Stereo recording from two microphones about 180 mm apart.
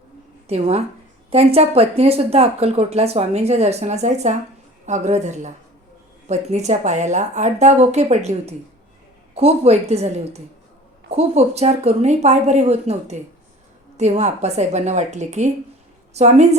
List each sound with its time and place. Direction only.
0.4 s a woman's voice: 35° right (ahead or behind)